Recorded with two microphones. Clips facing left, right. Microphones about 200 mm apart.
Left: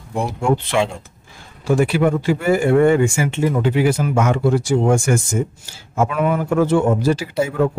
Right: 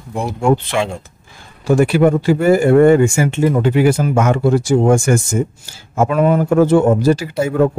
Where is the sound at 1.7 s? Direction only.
45° right (ahead or behind).